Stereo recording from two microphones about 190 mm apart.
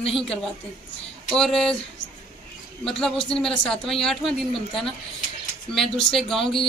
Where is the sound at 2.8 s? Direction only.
Centre (ahead or behind).